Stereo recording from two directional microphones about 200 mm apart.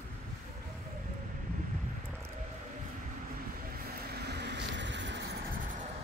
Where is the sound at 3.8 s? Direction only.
55° right (ahead or behind).